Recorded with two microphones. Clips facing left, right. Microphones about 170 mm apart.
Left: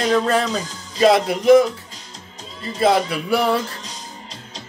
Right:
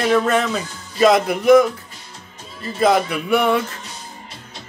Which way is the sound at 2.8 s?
30° left (ahead or behind).